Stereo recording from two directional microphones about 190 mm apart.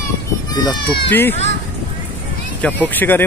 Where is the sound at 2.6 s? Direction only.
10° left (ahead or behind).